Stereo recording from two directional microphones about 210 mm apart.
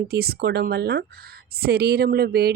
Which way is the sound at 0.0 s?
50° right (ahead or behind).